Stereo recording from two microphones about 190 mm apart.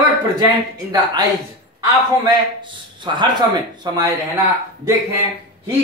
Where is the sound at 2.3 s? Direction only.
25° right (ahead or behind).